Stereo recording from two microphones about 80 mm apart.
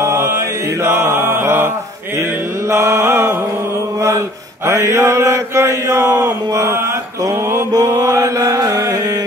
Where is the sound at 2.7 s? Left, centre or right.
Right.